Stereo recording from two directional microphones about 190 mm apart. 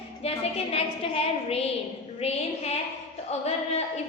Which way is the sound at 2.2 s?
35° left (ahead or behind).